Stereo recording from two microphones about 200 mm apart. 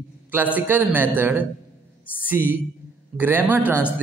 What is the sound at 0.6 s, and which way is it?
A man's voice, 10° right (ahead or behind).